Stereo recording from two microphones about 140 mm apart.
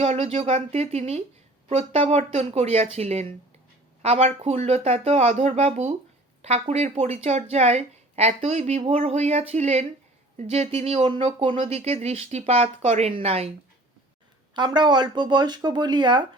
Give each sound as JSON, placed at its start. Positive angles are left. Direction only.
{"t": 0.0, "sound": "a woman's voice", "side_deg": -45}
{"t": 11.8, "sound": "a woman's voice", "side_deg": -50}
{"t": 14.5, "sound": "speech", "side_deg": -30}